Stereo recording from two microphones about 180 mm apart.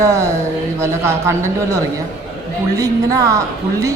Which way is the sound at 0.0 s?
15° right (ahead or behind).